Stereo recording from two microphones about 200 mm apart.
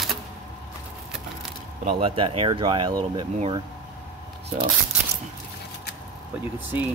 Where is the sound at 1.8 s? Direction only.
25° right (ahead or behind).